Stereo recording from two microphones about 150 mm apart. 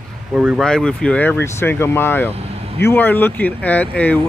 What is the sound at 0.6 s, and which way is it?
Speech, 5° left (ahead or behind).